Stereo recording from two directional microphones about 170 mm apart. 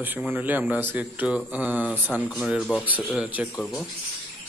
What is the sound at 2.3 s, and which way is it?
A man's voice, centre (ahead or behind).